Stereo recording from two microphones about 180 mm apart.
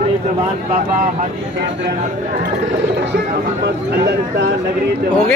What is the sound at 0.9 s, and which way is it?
Speech, 45° right (ahead or behind).